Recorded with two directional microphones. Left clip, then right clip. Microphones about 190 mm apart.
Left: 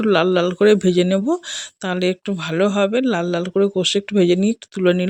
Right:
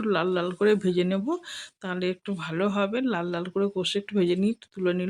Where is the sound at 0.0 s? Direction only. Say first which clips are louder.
Left 10 dB; 35° left (ahead or behind).